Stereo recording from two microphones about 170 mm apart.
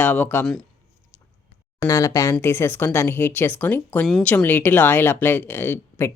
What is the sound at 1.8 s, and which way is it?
Speech, 20° left (ahead or behind).